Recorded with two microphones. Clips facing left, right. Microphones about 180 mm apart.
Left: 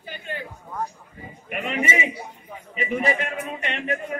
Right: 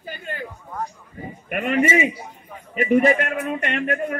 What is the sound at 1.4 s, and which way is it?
A man's voice, 55° right (ahead or behind).